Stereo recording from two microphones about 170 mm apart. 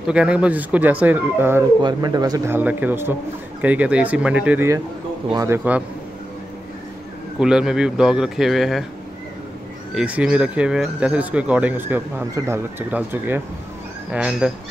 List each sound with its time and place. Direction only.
0.0 s speech: 5° right (ahead or behind)
1.8 s speech: 25° right (ahead or behind)
7.3 s a man's voice: 5° right (ahead or behind)
9.9 s speech: 5° right (ahead or behind)